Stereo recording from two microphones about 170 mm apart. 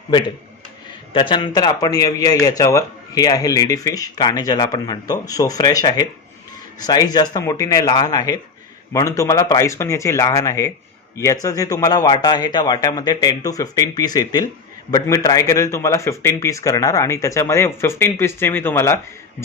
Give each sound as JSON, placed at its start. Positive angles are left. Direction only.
{"t": 1.1, "sound": "a man's voice", "side_deg": 30}